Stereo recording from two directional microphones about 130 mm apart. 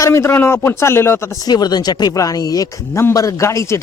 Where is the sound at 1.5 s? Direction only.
30° left (ahead or behind).